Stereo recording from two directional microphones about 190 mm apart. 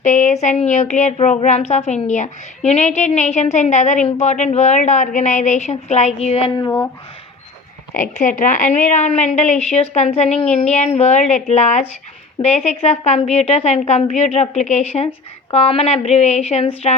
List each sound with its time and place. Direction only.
0.0 s a sound: 40° left (ahead or behind)
0.4 s a woman's voice: 35° left (ahead or behind)
6.5 s speech: 20° left (ahead or behind)
7.9 s a woman's voice: 40° left (ahead or behind)